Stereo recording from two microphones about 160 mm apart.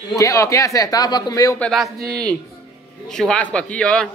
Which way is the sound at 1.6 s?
Centre (ahead or behind).